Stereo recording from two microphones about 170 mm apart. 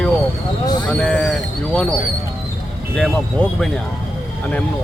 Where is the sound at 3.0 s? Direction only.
5° left (ahead or behind).